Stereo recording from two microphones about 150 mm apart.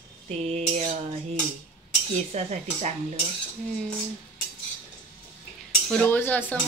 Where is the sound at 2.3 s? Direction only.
50° right (ahead or behind).